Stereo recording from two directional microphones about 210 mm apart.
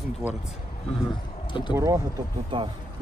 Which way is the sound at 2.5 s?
25° right (ahead or behind).